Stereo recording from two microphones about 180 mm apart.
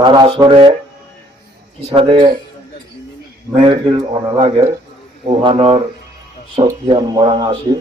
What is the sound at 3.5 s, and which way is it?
Speech, 25° right (ahead or behind).